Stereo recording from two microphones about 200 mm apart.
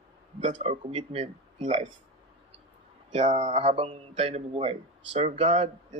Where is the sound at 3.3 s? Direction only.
35° right (ahead or behind).